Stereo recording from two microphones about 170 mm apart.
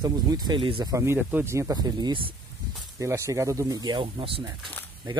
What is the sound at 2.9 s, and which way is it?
Speech, 15° right (ahead or behind).